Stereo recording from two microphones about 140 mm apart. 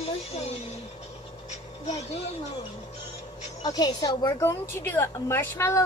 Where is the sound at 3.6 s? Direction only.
30° left (ahead or behind).